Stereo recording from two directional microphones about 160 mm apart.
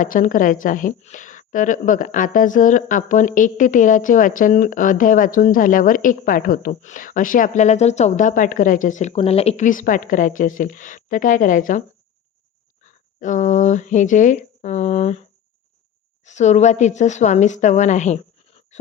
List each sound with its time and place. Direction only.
0.0 s a woman's voice: 55° left (ahead or behind)
12.8 s a woman's voice: 50° left (ahead or behind)